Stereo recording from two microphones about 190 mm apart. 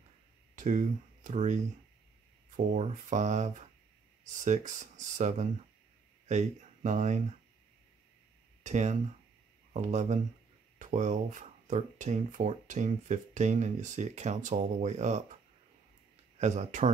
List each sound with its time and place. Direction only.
0.6 s speech: 40° right (ahead or behind)
8.6 s speech: 40° right (ahead or behind)
16.3 s speech: 35° right (ahead or behind)